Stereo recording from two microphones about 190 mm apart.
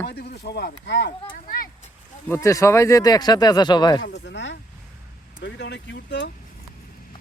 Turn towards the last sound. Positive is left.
turn(degrees=65)  # may be behind; listen again after turning